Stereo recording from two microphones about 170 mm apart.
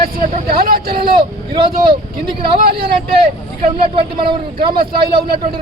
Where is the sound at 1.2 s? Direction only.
30° right (ahead or behind).